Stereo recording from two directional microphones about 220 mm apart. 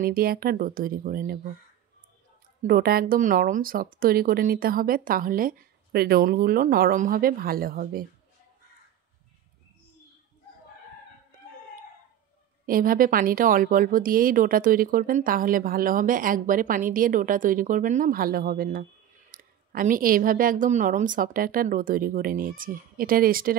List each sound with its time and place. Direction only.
0.0 s a woman's voice: 45° right (ahead or behind)
2.6 s a woman's voice: 40° right (ahead or behind)
12.6 s a woman's voice: 40° right (ahead or behind)